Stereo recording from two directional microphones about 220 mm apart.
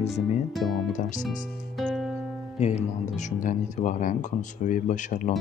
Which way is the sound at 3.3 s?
35° left (ahead or behind).